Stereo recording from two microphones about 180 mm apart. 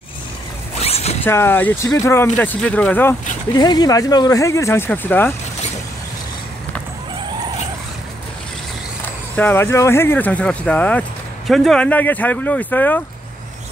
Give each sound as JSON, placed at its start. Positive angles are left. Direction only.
{"t": 0.7, "sound": "zipper", "side_deg": 35}
{"t": 1.2, "sound": "speech", "side_deg": 10}
{"t": 3.5, "sound": "speech", "side_deg": 20}
{"t": 9.4, "sound": "speech", "side_deg": 10}